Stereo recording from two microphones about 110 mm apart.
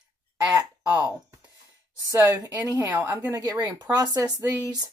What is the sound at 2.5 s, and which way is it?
Speech, 15° right (ahead or behind).